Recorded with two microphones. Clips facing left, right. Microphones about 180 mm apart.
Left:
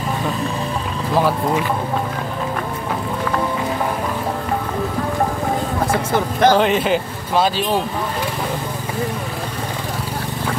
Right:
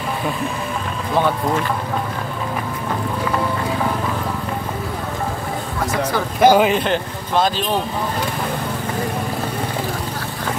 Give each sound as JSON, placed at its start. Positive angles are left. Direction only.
{"t": 1.1, "sound": "speech", "side_deg": 5}
{"t": 6.4, "sound": "speech", "side_deg": -10}
{"t": 6.7, "sound": "speech", "side_deg": 5}